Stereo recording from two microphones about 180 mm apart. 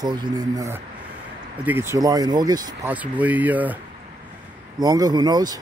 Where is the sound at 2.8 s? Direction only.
10° right (ahead or behind).